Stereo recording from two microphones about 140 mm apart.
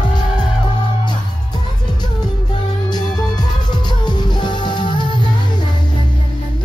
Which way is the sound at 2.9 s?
30° left (ahead or behind).